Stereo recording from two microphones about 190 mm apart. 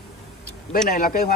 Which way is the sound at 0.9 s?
45° left (ahead or behind).